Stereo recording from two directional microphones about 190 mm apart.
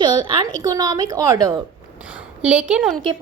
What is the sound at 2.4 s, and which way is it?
Speech, 5° right (ahead or behind).